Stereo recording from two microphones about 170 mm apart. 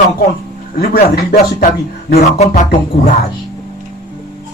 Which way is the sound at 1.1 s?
70° left (ahead or behind).